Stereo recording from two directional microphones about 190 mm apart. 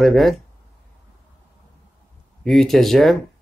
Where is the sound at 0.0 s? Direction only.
Centre (ahead or behind).